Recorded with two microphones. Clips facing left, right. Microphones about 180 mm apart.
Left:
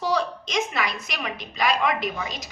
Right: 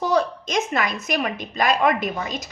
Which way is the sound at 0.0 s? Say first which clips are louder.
Right 4 dB; 50° right (ahead or behind).